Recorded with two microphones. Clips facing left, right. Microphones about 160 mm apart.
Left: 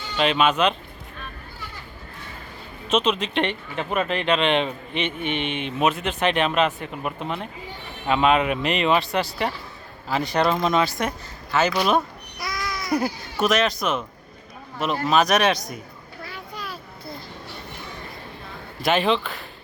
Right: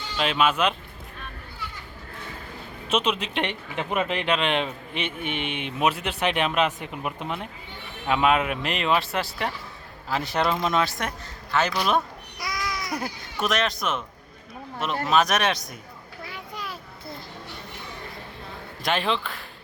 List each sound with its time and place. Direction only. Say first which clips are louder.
0.2 s speech: left 3 dB; 5° right (ahead or behind)
2.9 s speech: left 3 dB; 10° right (ahead or behind)
12.4 s a sound: left 1 dB; 15° right (ahead or behind)
12.9 s speech: left 7 dB; centre (ahead or behind)
16.2 s a sound: left 1 dB; 20° right (ahead or behind)
18.8 s speech: left 5 dB; 5° left (ahead or behind)